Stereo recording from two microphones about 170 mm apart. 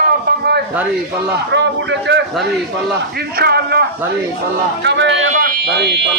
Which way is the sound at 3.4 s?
70° right (ahead or behind).